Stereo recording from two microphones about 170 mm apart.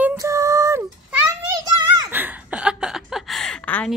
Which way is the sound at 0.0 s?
15° right (ahead or behind).